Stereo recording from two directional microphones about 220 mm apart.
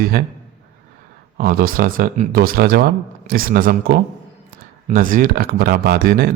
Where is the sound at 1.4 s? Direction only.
40° right (ahead or behind).